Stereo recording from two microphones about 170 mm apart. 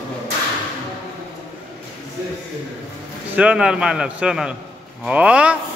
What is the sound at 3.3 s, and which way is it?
A man's voice, 5° right (ahead or behind).